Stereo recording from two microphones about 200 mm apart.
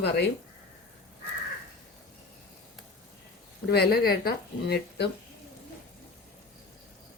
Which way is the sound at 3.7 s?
50° left (ahead or behind).